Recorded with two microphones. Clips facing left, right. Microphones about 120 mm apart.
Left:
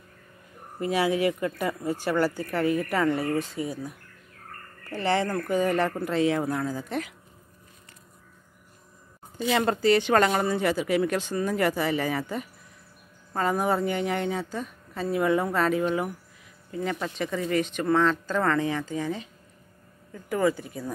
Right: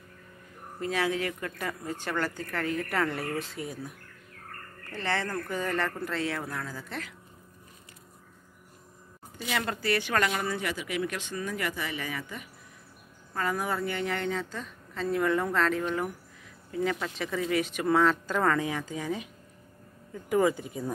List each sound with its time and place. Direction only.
0.7 s a woman's voice: 10° left (ahead or behind)
5.0 s a woman's voice: 15° left (ahead or behind)
9.5 s a woman's voice: 30° left (ahead or behind); by 15.8 s 10° left (ahead or behind)
16.8 s speech: centre (ahead or behind)
20.2 s speech: 15° right (ahead or behind)